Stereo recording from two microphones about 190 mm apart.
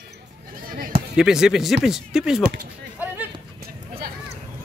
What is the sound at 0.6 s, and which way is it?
Bleat, 45° right (ahead or behind).